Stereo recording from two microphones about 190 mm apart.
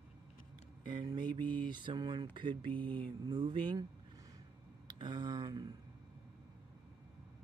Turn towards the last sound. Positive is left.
turn(degrees=-25)  # may be behind; listen again after turning